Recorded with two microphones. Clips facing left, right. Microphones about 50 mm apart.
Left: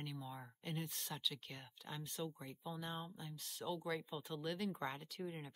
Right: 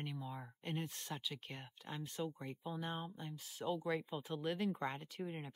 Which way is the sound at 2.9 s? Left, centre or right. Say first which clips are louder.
Right 3 dB; centre.